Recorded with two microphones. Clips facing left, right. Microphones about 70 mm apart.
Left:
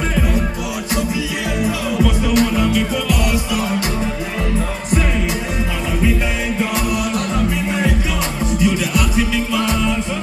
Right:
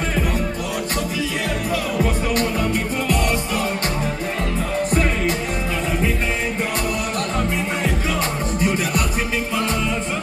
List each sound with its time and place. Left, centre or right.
2.0 s music: right
8.5 s music: right